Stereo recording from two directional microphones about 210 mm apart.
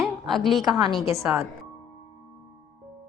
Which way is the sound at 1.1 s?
15° right (ahead or behind).